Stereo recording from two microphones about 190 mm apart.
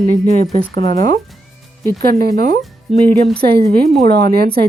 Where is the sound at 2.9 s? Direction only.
Centre (ahead or behind).